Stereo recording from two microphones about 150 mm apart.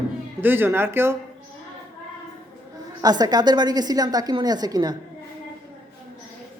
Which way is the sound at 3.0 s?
25° right (ahead or behind).